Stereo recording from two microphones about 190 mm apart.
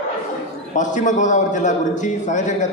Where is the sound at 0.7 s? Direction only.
40° left (ahead or behind).